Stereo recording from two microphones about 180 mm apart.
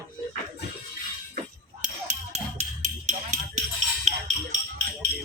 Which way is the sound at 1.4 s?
40° right (ahead or behind).